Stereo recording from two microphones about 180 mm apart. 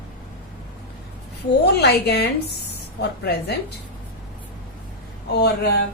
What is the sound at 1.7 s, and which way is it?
A woman's voice, 65° left (ahead or behind).